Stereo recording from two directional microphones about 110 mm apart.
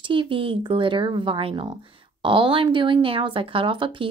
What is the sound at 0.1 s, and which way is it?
Speech, 50° right (ahead or behind).